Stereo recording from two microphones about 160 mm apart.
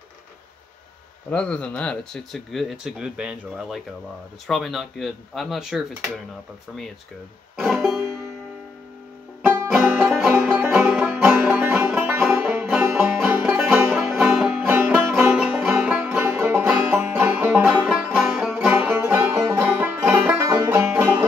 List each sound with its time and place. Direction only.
1.3 s speech: 10° left (ahead or behind)
7.5 s music: centre (ahead or behind)
9.4 s music: 15° right (ahead or behind)